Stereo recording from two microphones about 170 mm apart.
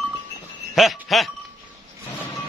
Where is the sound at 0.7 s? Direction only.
Centre (ahead or behind).